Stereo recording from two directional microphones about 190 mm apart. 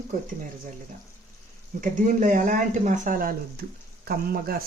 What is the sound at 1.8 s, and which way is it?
Speech, 45° right (ahead or behind).